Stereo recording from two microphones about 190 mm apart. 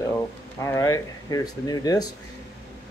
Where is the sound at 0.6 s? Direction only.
15° left (ahead or behind).